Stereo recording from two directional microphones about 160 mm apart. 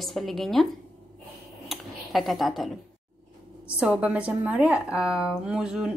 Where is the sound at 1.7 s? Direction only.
Centre (ahead or behind).